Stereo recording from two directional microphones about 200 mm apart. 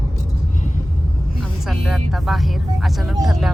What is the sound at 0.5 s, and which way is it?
Rumble, 35° left (ahead or behind).